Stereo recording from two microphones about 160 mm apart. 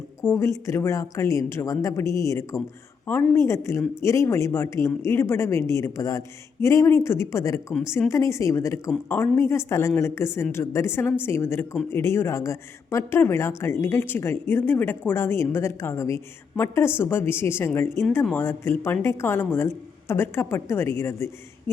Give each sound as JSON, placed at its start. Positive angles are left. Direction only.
{"t": 0.3, "sound": "a woman's voice", "side_deg": 15}